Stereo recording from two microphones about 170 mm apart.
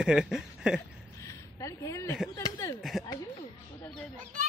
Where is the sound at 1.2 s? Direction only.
20° left (ahead or behind).